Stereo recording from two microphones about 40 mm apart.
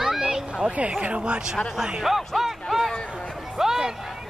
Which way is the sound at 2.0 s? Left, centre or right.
Centre.